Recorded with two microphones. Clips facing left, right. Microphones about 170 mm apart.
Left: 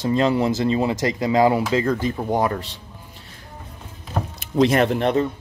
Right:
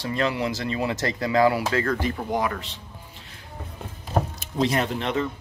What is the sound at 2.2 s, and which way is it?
Speech, 35° left (ahead or behind).